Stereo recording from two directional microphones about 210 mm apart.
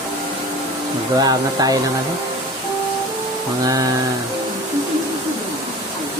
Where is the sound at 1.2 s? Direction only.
20° right (ahead or behind).